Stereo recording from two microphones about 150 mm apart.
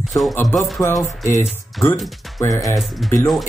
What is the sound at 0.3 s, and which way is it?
Speech, 15° left (ahead or behind).